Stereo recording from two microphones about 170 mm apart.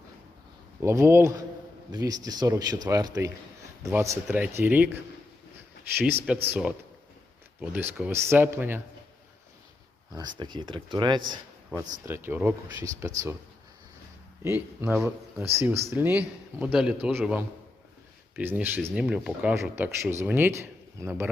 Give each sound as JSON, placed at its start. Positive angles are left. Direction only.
{"t": 0.8, "sound": "speech", "side_deg": -15}
{"t": 6.5, "sound": "speech", "side_deg": -10}
{"t": 10.3, "sound": "speech", "side_deg": -25}
{"t": 12.0, "sound": "speech", "side_deg": -15}
{"t": 14.4, "sound": "speech", "side_deg": -15}